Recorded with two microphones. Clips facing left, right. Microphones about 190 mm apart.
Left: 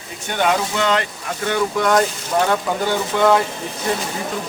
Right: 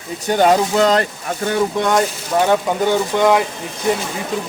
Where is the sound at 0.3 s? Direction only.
35° right (ahead or behind).